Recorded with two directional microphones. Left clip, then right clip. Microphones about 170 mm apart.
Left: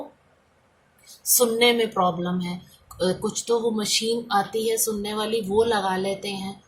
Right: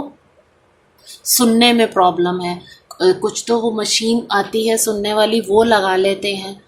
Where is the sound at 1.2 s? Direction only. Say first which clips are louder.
Right 6 dB; 40° right (ahead or behind).